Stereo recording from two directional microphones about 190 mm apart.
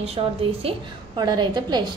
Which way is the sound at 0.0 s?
30° right (ahead or behind).